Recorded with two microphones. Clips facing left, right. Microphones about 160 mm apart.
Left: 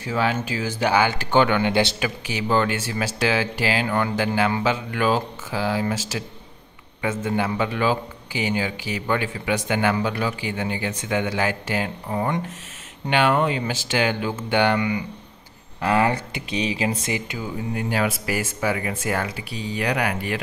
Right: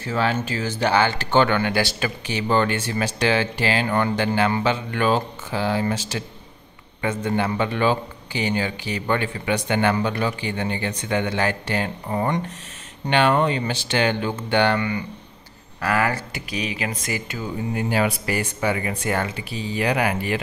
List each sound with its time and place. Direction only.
0.0 s speech: 10° left (ahead or behind)
2.0 s speech: 10° left (ahead or behind)
15.8 s speech: 25° left (ahead or behind)
17.7 s speech: centre (ahead or behind)